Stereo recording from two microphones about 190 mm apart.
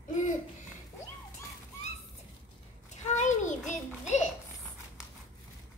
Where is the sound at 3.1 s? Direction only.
40° left (ahead or behind).